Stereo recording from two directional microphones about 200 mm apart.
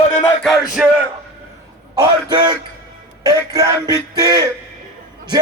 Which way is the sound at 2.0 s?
20° right (ahead or behind).